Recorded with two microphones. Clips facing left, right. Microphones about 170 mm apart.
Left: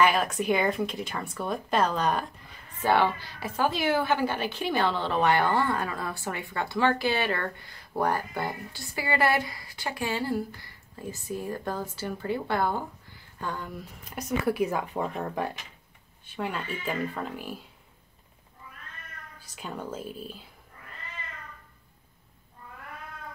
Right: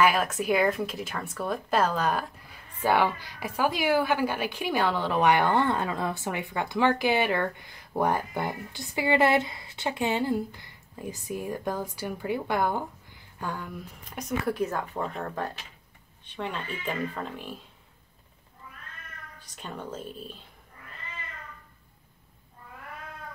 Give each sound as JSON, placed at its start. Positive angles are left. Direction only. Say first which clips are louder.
{"t": 0.0, "sound": "a woman's voice", "louder": "even", "side_deg": -5}
{"t": 14.1, "sound": "a woman's voice", "louder": "left 2 dB", "side_deg": 5}
{"t": 19.4, "sound": "speech", "louder": "left 2 dB", "side_deg": 5}